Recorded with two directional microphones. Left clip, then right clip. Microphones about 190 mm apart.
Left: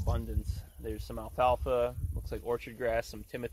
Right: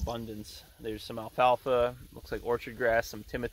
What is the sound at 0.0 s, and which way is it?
Speech, 10° right (ahead or behind).